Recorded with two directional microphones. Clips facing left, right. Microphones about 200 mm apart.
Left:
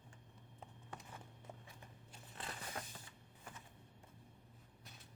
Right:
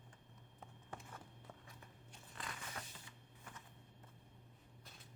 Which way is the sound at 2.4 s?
35° left (ahead or behind).